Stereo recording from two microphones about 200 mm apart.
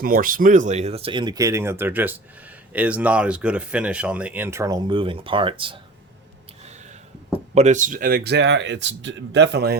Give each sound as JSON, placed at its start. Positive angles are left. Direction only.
{"t": 0.0, "sound": "speech", "side_deg": -45}
{"t": 7.5, "sound": "speech", "side_deg": -35}